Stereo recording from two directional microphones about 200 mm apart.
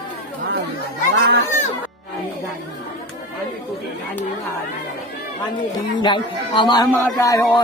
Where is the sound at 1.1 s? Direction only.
60° right (ahead or behind).